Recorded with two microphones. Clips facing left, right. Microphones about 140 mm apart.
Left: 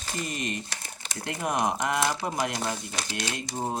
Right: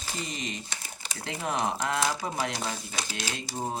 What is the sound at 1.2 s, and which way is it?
Speech, 10° left (ahead or behind).